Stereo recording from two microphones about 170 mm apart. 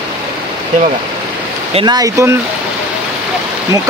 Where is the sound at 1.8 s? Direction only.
25° right (ahead or behind).